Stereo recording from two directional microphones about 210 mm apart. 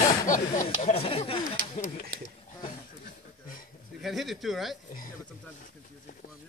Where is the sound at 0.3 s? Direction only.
35° left (ahead or behind).